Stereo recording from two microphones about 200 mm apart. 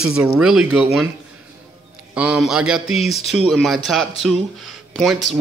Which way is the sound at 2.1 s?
5° right (ahead or behind).